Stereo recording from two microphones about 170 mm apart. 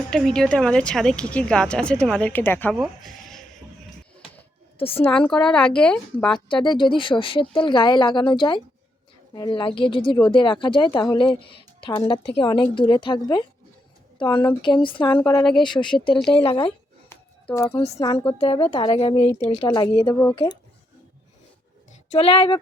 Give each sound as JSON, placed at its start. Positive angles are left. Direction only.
{"t": 0.1, "sound": "a woman's voice", "side_deg": 5}
{"t": 2.7, "sound": "speech", "side_deg": 0}
{"t": 4.8, "sound": "speech", "side_deg": 35}
{"t": 5.0, "sound": "a woman's voice", "side_deg": 5}
{"t": 6.7, "sound": "speech", "side_deg": 30}
{"t": 15.4, "sound": "a woman's voice", "side_deg": 5}
{"t": 16.3, "sound": "speech", "side_deg": 30}
{"t": 17.1, "sound": "a sound", "side_deg": 15}
{"t": 17.7, "sound": "speech", "side_deg": 35}
{"t": 18.0, "sound": "speech", "side_deg": 25}
{"t": 22.1, "sound": "speech", "side_deg": 35}